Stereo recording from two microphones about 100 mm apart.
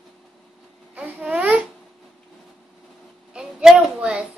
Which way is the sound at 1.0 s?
10° right (ahead or behind).